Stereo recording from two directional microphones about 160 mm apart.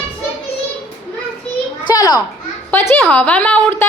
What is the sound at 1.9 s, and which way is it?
Speech, 25° left (ahead or behind).